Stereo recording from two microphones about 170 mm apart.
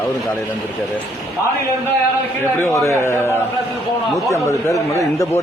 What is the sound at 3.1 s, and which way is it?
Speech, 15° left (ahead or behind).